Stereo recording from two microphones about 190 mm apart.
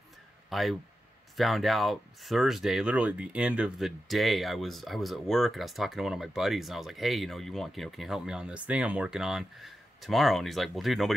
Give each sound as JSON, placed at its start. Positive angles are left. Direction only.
{"t": 0.5, "sound": "speech", "side_deg": 0}